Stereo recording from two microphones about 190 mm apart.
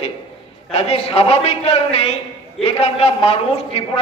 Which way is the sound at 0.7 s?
30° left (ahead or behind).